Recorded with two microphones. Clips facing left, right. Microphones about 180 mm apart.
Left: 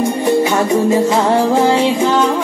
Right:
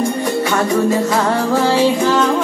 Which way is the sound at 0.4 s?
10° left (ahead or behind).